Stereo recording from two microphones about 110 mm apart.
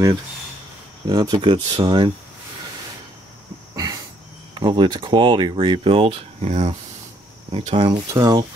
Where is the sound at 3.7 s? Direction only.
35° right (ahead or behind).